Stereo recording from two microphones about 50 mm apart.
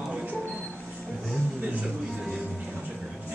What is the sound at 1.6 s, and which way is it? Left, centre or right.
Music, right.